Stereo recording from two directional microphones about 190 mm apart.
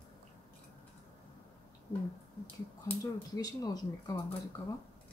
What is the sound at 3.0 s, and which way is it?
Speech, 20° left (ahead or behind).